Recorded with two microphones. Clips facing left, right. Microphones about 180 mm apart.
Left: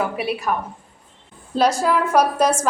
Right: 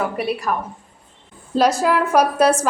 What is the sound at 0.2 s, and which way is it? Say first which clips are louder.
Speech: right 1 dB; 5° left (ahead or behind).